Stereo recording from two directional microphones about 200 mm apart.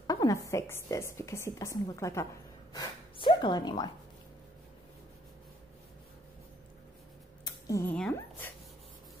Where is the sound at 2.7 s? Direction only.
25° left (ahead or behind).